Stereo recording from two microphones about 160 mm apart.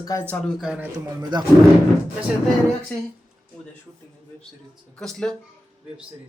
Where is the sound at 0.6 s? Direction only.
5° right (ahead or behind).